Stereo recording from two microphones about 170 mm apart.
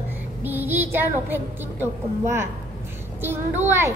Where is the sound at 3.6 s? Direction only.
15° right (ahead or behind).